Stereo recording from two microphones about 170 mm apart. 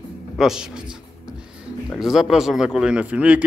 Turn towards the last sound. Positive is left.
turn(degrees=-5)  # may be behind; listen again after turning